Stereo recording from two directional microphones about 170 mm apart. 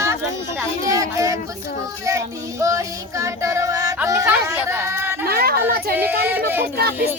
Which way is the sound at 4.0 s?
15° right (ahead or behind).